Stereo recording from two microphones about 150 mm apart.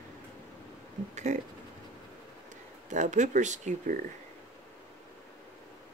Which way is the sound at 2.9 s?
55° right (ahead or behind).